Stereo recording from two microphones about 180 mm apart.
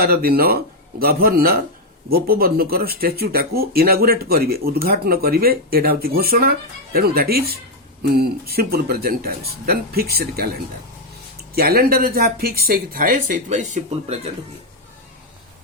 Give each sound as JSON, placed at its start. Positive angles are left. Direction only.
{"t": 0.0, "sound": "speech", "side_deg": -60}
{"t": 11.5, "sound": "speech", "side_deg": -55}